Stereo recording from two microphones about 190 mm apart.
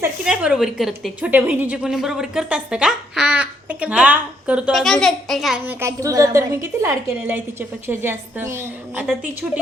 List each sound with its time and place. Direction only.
0.0 s a woman's voice: 5° right (ahead or behind)
5.8 s a woman's voice: 15° right (ahead or behind)